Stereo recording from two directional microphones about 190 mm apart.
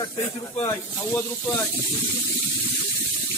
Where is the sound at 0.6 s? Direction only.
15° left (ahead or behind).